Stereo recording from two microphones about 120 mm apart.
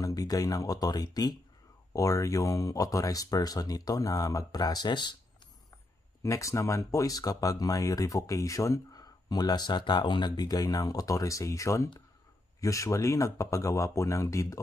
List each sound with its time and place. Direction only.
0.0 s speech: 30° left (ahead or behind)
6.2 s speech: 25° left (ahead or behind)